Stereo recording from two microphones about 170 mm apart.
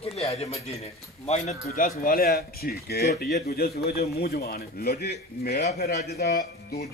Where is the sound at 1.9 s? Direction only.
60° left (ahead or behind).